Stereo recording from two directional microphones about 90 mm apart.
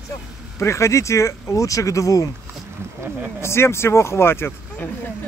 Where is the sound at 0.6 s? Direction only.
30° left (ahead or behind).